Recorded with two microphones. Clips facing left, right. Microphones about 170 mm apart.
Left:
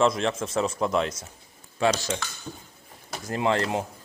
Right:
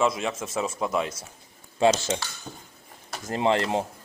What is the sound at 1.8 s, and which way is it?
Speech, 20° right (ahead or behind).